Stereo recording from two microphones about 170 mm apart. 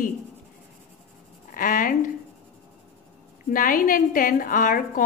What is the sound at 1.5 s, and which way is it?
Speech, 55° left (ahead or behind).